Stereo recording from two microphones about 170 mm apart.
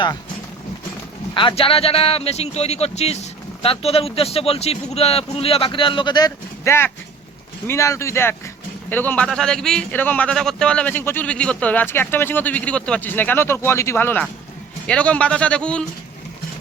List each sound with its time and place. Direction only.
1.3 s a man's voice: 30° left (ahead or behind); by 15.8 s 5° left (ahead or behind)